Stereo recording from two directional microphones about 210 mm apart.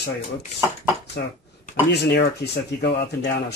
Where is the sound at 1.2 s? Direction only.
50° left (ahead or behind).